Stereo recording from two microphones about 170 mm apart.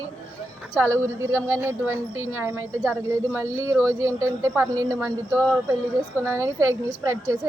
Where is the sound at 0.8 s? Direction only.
15° right (ahead or behind).